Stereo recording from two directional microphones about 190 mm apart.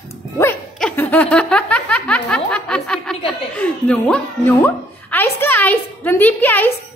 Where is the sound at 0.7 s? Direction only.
10° left (ahead or behind).